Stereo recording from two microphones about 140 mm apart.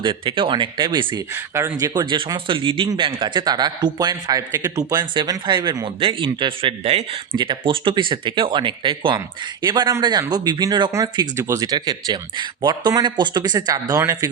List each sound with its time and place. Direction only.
0.0 s speech: 35° right (ahead or behind)
1.3 s speech: 20° right (ahead or behind)
1.8 s speech: 30° right (ahead or behind)